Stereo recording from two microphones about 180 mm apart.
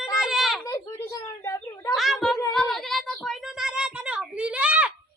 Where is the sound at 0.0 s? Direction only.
Centre (ahead or behind).